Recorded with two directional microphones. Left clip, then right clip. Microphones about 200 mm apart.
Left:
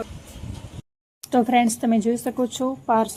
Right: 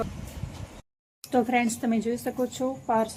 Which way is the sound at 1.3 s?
40° left (ahead or behind).